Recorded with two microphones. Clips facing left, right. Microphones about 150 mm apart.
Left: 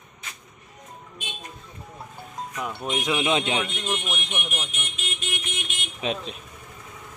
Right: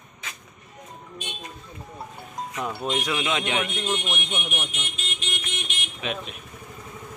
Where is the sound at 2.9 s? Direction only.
15° left (ahead or behind).